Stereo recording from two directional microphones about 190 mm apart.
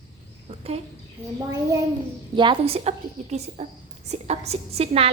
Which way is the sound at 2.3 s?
25° right (ahead or behind).